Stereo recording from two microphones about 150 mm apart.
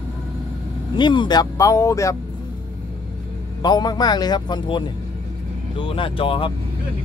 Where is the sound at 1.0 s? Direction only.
30° left (ahead or behind).